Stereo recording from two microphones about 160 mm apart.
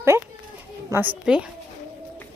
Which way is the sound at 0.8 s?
15° right (ahead or behind).